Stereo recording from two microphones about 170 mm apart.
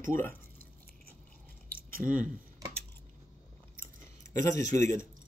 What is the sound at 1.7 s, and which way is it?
Chewing, 55° right (ahead or behind).